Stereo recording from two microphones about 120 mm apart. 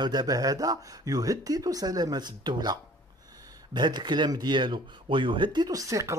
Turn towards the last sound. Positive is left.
turn(degrees=-25)  # may be behind; listen again after turning